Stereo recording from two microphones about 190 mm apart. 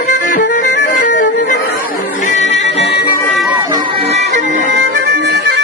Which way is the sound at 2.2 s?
40° left (ahead or behind).